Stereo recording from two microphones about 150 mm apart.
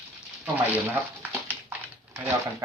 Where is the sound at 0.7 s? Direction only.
10° right (ahead or behind).